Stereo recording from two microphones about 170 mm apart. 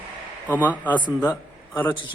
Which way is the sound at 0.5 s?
10° left (ahead or behind).